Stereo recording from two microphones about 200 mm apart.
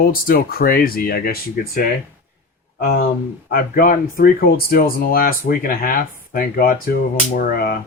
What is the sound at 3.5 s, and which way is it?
Speech, 45° left (ahead or behind).